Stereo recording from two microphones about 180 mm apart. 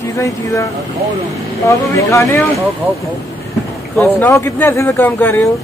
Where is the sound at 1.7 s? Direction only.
15° left (ahead or behind).